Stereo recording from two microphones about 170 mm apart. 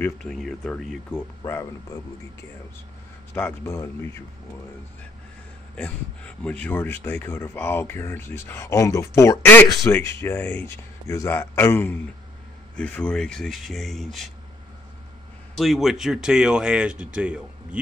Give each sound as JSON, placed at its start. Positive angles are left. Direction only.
{"t": 0.0, "sound": "speech", "side_deg": 5}
{"t": 1.4, "sound": "speech", "side_deg": 20}
{"t": 3.3, "sound": "speech", "side_deg": 15}
{"t": 5.8, "sound": "speech", "side_deg": 5}
{"t": 15.5, "sound": "speech", "side_deg": 0}